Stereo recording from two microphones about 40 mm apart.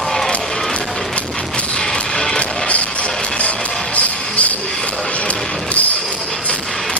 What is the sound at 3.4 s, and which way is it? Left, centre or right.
Music, left.